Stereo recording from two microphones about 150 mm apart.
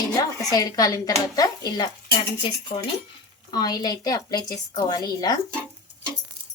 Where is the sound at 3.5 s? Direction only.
25° left (ahead or behind).